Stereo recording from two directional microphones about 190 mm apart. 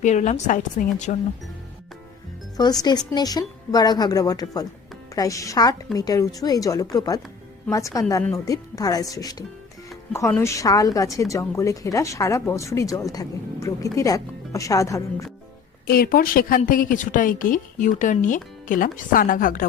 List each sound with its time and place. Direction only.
0.0 s a woman's voice: 40° left (ahead or behind)
2.6 s a woman's voice: 20° left (ahead or behind)
15.9 s a woman's voice: 50° left (ahead or behind)